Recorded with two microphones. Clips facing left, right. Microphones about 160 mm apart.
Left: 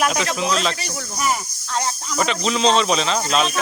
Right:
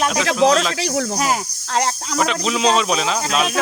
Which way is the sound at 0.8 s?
90° right.